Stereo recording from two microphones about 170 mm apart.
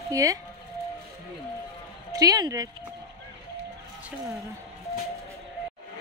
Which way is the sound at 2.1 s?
20° right (ahead or behind).